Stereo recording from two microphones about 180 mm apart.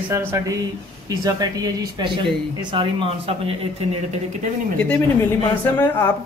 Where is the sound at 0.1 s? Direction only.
15° right (ahead or behind); by 3.5 s 30° right (ahead or behind).